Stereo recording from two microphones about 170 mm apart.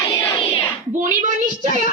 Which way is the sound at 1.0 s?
50° right (ahead or behind).